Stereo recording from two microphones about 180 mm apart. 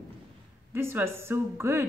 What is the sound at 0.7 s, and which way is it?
A woman's voice, 15° right (ahead or behind).